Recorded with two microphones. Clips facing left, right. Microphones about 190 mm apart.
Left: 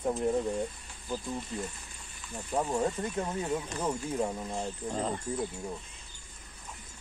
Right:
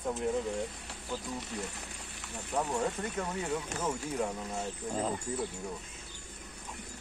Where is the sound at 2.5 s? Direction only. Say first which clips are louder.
Left 2 dB; 15° left (ahead or behind).